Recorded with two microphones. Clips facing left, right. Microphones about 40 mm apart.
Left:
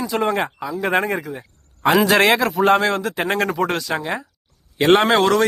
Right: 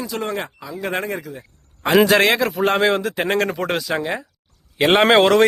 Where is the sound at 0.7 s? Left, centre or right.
Centre.